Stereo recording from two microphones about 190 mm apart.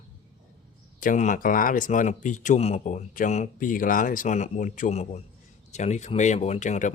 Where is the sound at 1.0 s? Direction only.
40° left (ahead or behind).